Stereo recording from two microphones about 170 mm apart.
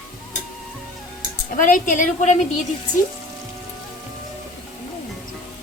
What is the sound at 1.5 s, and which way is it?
Speech, 50° left (ahead or behind).